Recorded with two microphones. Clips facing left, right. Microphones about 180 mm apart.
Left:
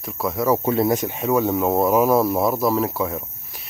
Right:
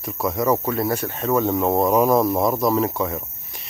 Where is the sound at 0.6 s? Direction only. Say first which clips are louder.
Left 3 dB; 25° left (ahead or behind); by 3.2 s 5° left (ahead or behind).